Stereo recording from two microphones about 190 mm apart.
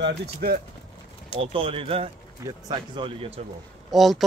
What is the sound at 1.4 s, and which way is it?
Speech, 30° right (ahead or behind).